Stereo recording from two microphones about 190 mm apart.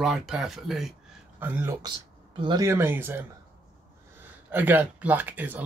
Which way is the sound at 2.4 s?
20° right (ahead or behind).